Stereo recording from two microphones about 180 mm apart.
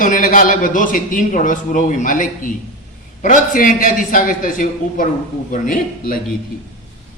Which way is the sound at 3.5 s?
50° left (ahead or behind).